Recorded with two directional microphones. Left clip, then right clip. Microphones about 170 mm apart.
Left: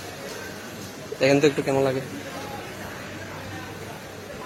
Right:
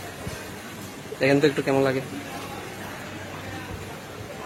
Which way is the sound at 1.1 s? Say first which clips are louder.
Left 1 dB; 5° right (ahead or behind).